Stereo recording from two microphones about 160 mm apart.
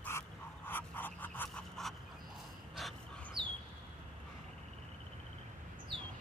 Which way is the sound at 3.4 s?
30° right (ahead or behind).